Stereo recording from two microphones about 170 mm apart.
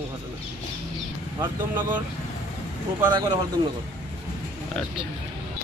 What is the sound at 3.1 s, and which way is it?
Speech, 25° right (ahead or behind).